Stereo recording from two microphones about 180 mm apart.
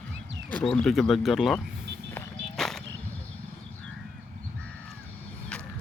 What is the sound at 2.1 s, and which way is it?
Whip, centre (ahead or behind).